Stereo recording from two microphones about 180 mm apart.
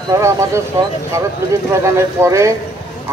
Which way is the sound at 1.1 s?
15° right (ahead or behind).